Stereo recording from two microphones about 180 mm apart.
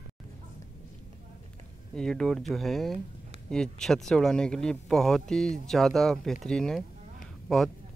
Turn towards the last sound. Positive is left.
turn(degrees=0)  # may be behind; listen again after turning